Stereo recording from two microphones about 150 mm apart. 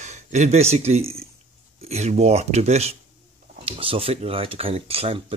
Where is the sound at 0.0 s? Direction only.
50° right (ahead or behind).